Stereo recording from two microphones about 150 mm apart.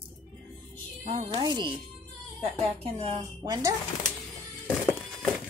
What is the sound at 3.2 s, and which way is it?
Speech, 25° right (ahead or behind).